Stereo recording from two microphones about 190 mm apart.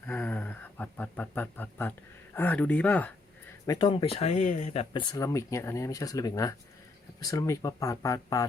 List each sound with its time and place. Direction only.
0.1 s a sound: 10° left (ahead or behind)
2.3 s speech: 10° left (ahead or behind)
3.7 s speech: 25° left (ahead or behind)
5.1 s speech: 15° left (ahead or behind)